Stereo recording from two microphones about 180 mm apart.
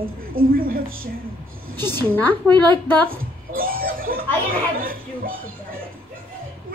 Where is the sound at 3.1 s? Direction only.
55° right (ahead or behind).